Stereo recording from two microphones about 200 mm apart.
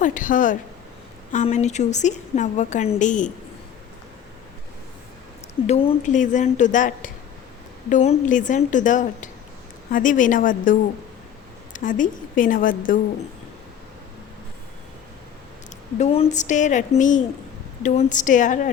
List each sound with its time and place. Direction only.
0.0 s a woman's voice: 40° left (ahead or behind)
5.6 s a woman's voice: 30° left (ahead or behind)
16.0 s a woman's voice: 30° left (ahead or behind)